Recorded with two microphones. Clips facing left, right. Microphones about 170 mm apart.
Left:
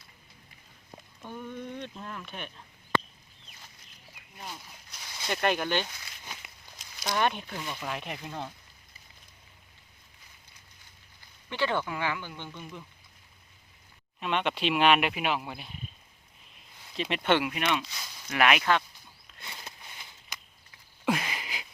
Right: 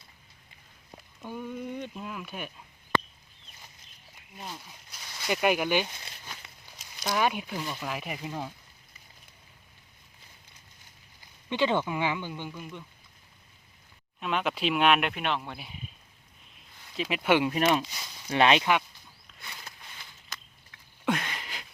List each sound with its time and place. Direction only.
1.2 s speech: 10° right (ahead or behind)
4.4 s speech: 5° right (ahead or behind)
11.4 s speech: 20° right (ahead or behind)
14.2 s speech: centre (ahead or behind)
16.6 s a sound: centre (ahead or behind)
17.4 s speech: 35° right (ahead or behind)
18.3 s speech: 30° right (ahead or behind)
19.4 s a sound: 20° left (ahead or behind); by 21.7 s 5° left (ahead or behind)